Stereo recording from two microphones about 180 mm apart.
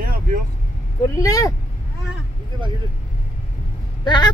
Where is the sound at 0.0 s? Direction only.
50° right (ahead or behind).